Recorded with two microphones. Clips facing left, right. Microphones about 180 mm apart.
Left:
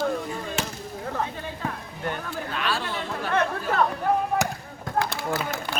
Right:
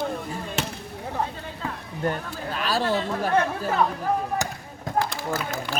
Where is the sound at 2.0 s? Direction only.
40° right (ahead or behind).